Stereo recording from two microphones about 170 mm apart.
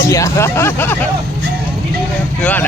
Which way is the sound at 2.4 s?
10° left (ahead or behind).